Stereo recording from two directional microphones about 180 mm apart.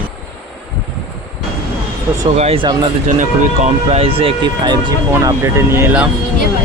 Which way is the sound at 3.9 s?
30° right (ahead or behind).